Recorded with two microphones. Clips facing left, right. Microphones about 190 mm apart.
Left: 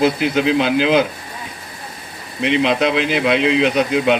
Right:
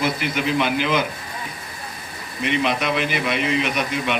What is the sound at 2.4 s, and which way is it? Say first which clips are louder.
A man's voice: left 6 dB; 90° left.